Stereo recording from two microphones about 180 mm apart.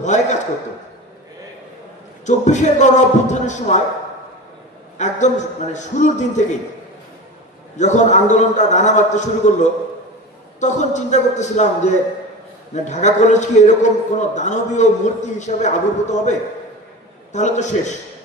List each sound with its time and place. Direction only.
0.0 s a sound: 40° left (ahead or behind)
2.2 s a man's voice: 40° left (ahead or behind)
4.9 s a man's voice: 40° left (ahead or behind)
7.7 s a man's voice: 40° left (ahead or behind)